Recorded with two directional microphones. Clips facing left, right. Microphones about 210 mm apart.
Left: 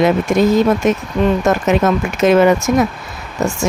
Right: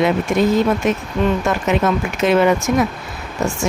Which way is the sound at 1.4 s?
45° left (ahead or behind).